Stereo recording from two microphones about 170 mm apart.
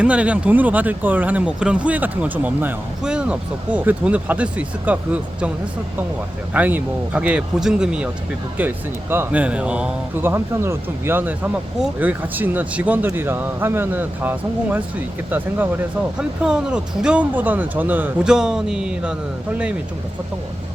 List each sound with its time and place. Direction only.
0.0 s speech: 5° right (ahead or behind)
6.5 s speech: 10° right (ahead or behind)